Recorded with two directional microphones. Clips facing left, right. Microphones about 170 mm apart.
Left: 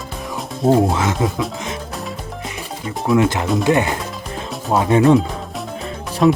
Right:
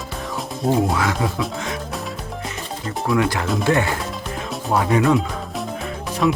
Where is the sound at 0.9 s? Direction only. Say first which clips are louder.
Left 2 dB; 20° left (ahead or behind).